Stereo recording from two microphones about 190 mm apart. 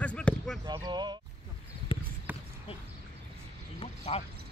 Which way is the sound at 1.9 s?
25° left (ahead or behind).